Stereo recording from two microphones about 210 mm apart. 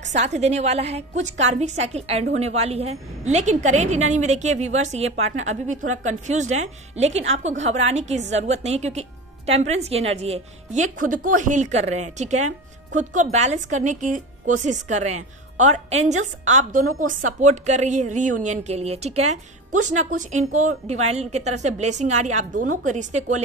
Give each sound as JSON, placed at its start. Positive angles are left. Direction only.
{"t": 0.0, "sound": "a woman's voice", "side_deg": -35}